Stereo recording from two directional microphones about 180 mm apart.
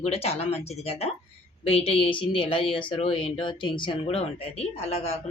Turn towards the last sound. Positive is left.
turn(degrees=35)  # may be behind; listen again after turning